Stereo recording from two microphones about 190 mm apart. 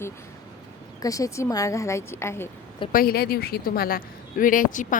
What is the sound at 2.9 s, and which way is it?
A woman's voice, 50° left (ahead or behind).